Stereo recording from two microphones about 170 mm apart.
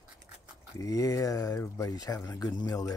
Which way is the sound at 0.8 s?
20° left (ahead or behind).